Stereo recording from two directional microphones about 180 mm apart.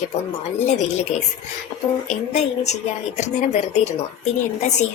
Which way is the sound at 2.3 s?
40° left (ahead or behind).